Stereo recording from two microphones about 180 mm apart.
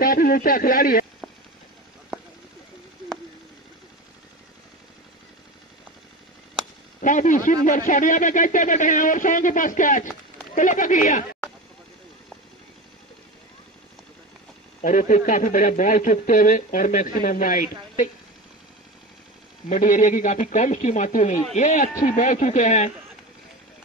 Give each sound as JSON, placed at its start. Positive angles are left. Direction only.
{"t": 0.0, "sound": "speech", "side_deg": 50}
{"t": 7.0, "sound": "speech", "side_deg": 45}
{"t": 14.8, "sound": "speech", "side_deg": 45}
{"t": 19.7, "sound": "speech", "side_deg": 45}